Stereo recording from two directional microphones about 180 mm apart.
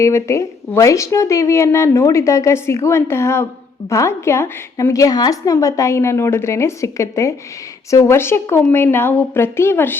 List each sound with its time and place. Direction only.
0.0 s a woman's voice: 15° left (ahead or behind)